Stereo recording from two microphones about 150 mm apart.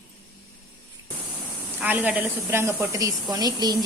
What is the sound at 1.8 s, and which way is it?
A woman's voice, 10° right (ahead or behind).